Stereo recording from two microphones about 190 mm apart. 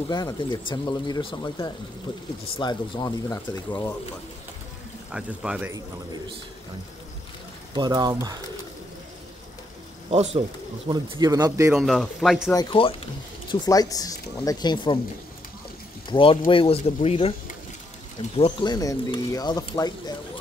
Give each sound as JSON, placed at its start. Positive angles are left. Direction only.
{"t": 0.1, "sound": "speech", "side_deg": 20}
{"t": 3.4, "sound": "speech", "side_deg": 10}
{"t": 5.1, "sound": "speech", "side_deg": -5}
{"t": 7.7, "sound": "a man's voice", "side_deg": -20}
{"t": 10.1, "sound": "speech", "side_deg": -35}
{"t": 10.9, "sound": "a man's voice", "side_deg": -25}
{"t": 11.7, "sound": "speech", "side_deg": 0}
{"t": 12.7, "sound": "speech", "side_deg": 25}
{"t": 16.1, "sound": "speech", "side_deg": 25}
{"t": 18.4, "sound": "speech", "side_deg": 20}